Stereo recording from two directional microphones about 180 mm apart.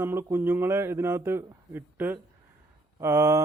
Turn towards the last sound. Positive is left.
turn(degrees=-15)  # may be behind; listen again after turning